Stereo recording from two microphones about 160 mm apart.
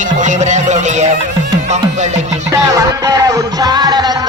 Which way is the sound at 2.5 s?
20° right (ahead or behind).